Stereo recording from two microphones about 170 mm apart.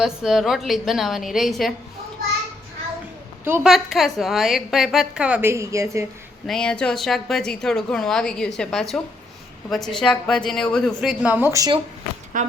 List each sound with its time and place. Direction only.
0.0 s a woman's voice: centre (ahead or behind)
3.4 s a woman's voice: 15° right (ahead or behind)
3.7 s a woman's voice: centre (ahead or behind); by 6.1 s 15° right (ahead or behind)
6.5 s a woman's voice: 5° left (ahead or behind)
11.2 s speech: 10° right (ahead or behind)
12.3 s speech: 55° right (ahead or behind)